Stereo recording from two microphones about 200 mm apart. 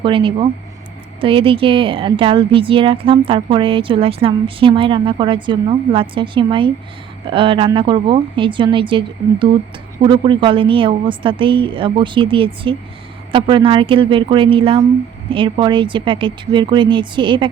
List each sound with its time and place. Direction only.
0.0 s speech: 25° right (ahead or behind)